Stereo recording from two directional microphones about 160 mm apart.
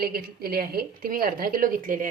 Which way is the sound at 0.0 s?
70° right (ahead or behind).